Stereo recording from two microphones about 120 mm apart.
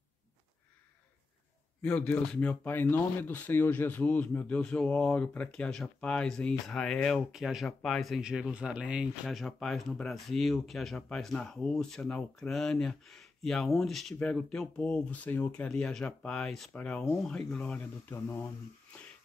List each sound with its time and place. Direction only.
1.8 s speech: 15° left (ahead or behind)